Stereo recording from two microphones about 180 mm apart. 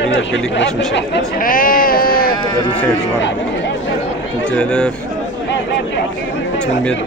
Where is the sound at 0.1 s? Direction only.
85° left.